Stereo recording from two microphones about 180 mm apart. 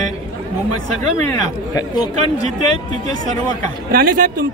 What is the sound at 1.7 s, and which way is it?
Speech, 25° left (ahead or behind).